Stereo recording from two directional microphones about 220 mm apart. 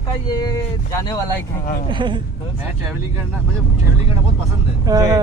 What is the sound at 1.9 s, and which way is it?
Speech, 20° right (ahead or behind).